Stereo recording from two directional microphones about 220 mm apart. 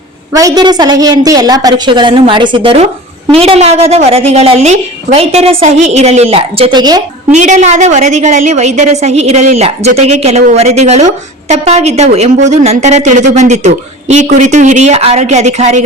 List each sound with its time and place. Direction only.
0.3 s a woman's voice: 15° right (ahead or behind)
7.3 s a woman's voice: 30° right (ahead or behind)